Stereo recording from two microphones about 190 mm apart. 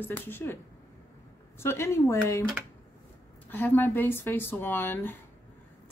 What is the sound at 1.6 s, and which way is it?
Speech, 15° left (ahead or behind).